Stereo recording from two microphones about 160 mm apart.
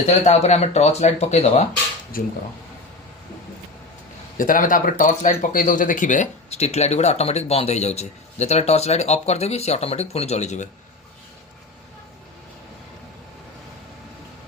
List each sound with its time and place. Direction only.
0.3 s speech: 45° left (ahead or behind)
2.1 s speech: 65° left (ahead or behind)
4.4 s speech: 60° left (ahead or behind)